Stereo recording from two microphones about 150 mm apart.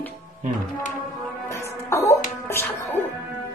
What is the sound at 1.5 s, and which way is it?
Music, 20° left (ahead or behind).